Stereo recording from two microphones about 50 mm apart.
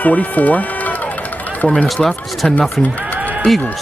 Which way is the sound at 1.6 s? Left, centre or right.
Left.